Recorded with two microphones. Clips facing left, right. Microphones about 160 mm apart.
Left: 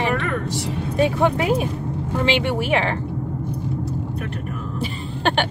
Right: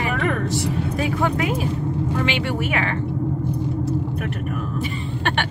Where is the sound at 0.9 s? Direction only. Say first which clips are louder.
Left 6 dB; 25° left (ahead or behind).